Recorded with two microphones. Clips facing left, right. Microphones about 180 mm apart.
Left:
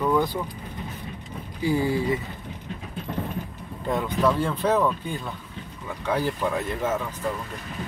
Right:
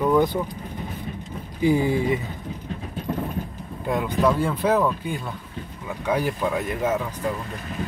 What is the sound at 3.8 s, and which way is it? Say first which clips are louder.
Speech: right 2 dB; 10° right (ahead or behind).